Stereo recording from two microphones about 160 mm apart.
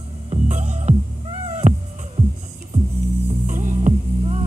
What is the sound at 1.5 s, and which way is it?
Cat, 45° right (ahead or behind).